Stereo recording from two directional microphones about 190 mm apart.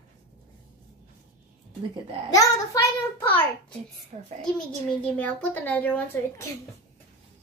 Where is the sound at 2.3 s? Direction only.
20° left (ahead or behind).